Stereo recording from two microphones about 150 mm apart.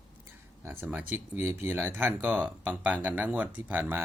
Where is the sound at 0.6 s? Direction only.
15° right (ahead or behind).